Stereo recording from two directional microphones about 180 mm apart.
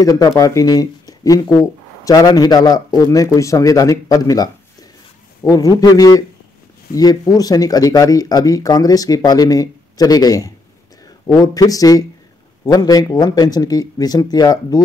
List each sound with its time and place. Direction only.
0.0 s speech: 20° left (ahead or behind)